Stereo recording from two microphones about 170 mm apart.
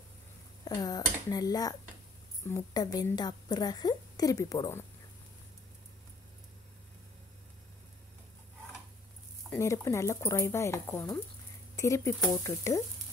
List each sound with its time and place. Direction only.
0.7 s a woman's voice: 20° left (ahead or behind)
9.5 s speech: 15° left (ahead or behind)